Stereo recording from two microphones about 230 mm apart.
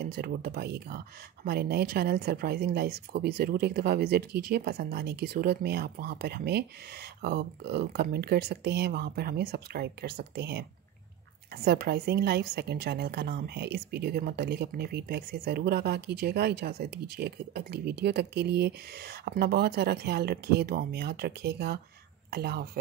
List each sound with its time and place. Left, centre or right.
0.0 s speech: right